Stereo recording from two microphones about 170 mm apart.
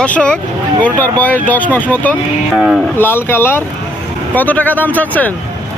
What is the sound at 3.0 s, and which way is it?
Speech, 10° left (ahead or behind).